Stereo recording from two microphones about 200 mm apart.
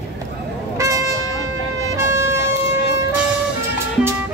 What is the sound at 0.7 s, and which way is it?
Music, 15° right (ahead or behind).